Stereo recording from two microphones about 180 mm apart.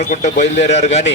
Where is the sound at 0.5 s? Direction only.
80° left.